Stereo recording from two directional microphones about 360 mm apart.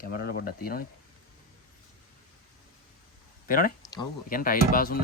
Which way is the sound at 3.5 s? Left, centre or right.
Left.